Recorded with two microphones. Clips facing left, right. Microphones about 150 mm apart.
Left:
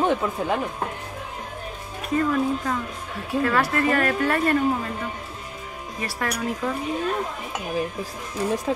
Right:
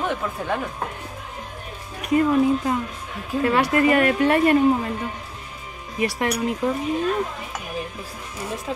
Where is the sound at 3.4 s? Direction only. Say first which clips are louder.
Right 4 dB; 20° right (ahead or behind).